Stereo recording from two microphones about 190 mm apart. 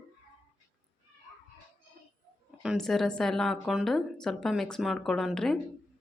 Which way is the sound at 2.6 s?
Centre (ahead or behind).